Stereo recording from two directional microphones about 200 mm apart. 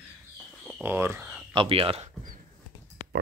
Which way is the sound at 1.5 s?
25° right (ahead or behind).